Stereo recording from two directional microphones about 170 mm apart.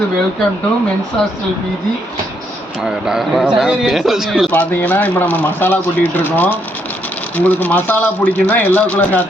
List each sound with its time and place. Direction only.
2.8 s speech: 5° right (ahead or behind)
4.5 s speech: 10° left (ahead or behind)